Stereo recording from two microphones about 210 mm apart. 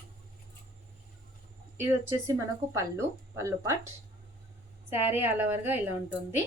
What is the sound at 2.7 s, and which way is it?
A woman's voice, 15° right (ahead or behind).